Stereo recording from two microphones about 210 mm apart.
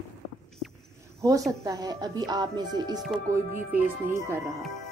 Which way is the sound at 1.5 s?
15° right (ahead or behind).